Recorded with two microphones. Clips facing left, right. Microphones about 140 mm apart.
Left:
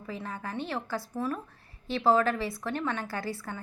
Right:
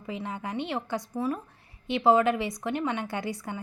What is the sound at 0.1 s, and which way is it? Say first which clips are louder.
A woman's voice: right 3 dB; 20° right (ahead or behind).